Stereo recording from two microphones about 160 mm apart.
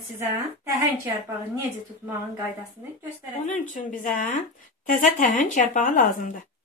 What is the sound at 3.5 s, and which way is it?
A woman's voice, 50° left (ahead or behind).